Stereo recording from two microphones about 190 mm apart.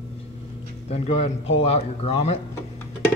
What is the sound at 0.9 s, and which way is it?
A man's voice, 30° left (ahead or behind).